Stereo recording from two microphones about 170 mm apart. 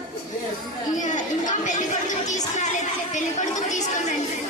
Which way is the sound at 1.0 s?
50° left (ahead or behind).